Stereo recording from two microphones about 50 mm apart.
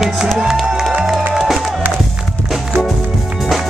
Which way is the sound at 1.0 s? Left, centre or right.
Centre.